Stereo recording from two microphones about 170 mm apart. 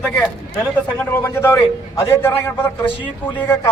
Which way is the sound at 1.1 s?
15° left (ahead or behind).